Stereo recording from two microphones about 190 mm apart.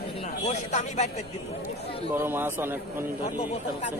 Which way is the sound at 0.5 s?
40° left (ahead or behind).